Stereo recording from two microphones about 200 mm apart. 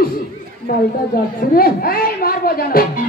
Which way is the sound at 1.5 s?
50° left (ahead or behind).